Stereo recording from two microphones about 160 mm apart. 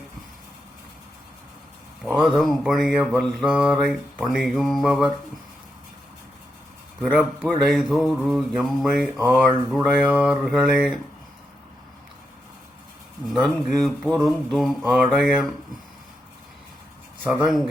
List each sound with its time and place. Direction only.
2.0 s mantra: centre (ahead or behind)
7.0 s mantra: 5° right (ahead or behind)
13.2 s mantra: centre (ahead or behind)
17.2 s mantra: centre (ahead or behind)